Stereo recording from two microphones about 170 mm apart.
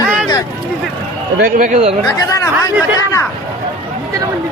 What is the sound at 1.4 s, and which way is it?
Speech, 55° right (ahead or behind).